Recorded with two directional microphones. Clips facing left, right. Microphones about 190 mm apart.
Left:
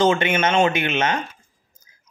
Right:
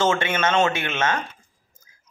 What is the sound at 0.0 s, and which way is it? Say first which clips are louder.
A man's voice: left 3 dB; 15° left (ahead or behind).